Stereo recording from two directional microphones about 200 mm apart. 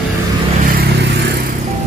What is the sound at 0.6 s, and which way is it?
Vehicle, 50° right (ahead or behind).